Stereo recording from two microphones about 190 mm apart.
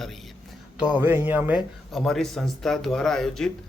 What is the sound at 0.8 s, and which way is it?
Speech, 10° right (ahead or behind).